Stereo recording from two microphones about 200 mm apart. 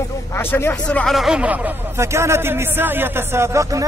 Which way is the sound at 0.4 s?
10° left (ahead or behind).